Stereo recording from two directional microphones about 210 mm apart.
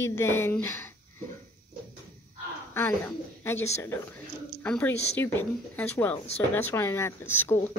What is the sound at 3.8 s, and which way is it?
Speech, 5° left (ahead or behind).